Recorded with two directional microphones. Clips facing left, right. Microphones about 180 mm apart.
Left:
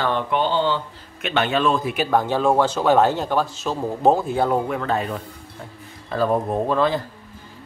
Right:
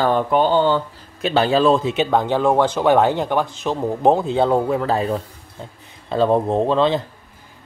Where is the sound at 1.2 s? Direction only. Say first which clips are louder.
Right 5 dB; 35° right (ahead or behind).